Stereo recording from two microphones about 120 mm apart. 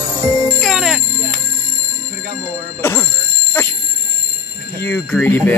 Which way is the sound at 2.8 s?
20° left (ahead or behind).